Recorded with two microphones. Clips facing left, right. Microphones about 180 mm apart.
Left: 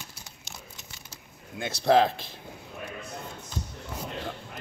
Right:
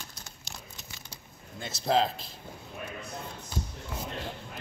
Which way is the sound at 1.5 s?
65° left (ahead or behind).